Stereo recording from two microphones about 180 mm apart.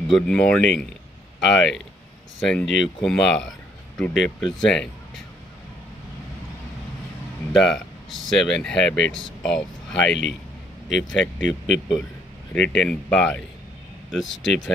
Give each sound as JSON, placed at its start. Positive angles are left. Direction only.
{"t": 0.0, "sound": "speech", "side_deg": 5}
{"t": 7.5, "sound": "speech", "side_deg": 0}
{"t": 9.9, "sound": "speech", "side_deg": 75}
{"t": 10.9, "sound": "speech", "side_deg": 5}
{"t": 12.5, "sound": "speech", "side_deg": 5}
{"t": 14.2, "sound": "speech", "side_deg": 90}